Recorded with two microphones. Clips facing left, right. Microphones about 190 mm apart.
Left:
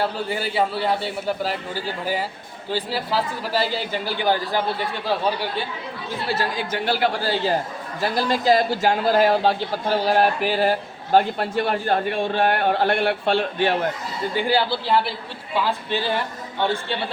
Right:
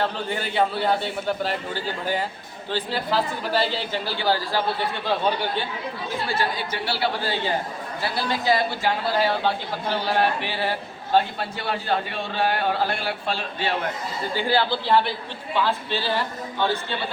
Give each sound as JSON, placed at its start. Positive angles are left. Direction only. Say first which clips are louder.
{"t": 0.0, "sound": "a man's voice", "louder": "left 2 dB", "side_deg": 5}
{"t": 6.3, "sound": "a man's voice", "louder": "left 4 dB", "side_deg": 50}
{"t": 8.1, "sound": "a man's voice", "louder": "left 4 dB", "side_deg": 40}
{"t": 14.3, "sound": "a man's voice", "louder": "left 1 dB", "side_deg": 15}